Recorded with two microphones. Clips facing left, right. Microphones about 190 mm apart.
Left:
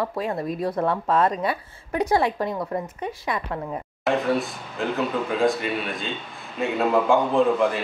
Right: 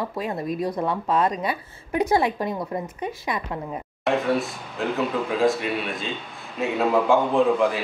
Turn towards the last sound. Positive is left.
turn(degrees=0)  # may be behind; listen again after turning